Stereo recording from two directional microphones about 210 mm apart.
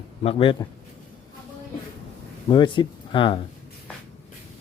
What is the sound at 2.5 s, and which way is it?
Speech, 25° left (ahead or behind).